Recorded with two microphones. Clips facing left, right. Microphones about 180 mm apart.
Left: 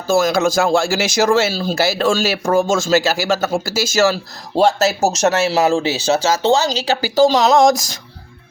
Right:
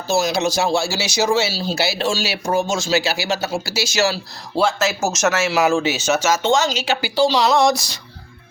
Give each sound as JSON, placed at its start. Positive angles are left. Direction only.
{"t": 0.1, "sound": "speech", "side_deg": 50}
{"t": 0.7, "sound": "speech", "side_deg": 90}
{"t": 1.5, "sound": "speech", "side_deg": 50}